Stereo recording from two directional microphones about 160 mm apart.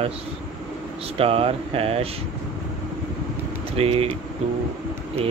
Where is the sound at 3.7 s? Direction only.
40° right (ahead or behind).